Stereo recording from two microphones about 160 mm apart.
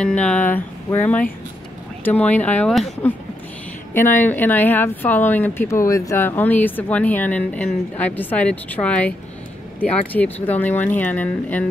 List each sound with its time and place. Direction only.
0.0 s speech: 5° left (ahead or behind)
10.1 s speech: 10° left (ahead or behind)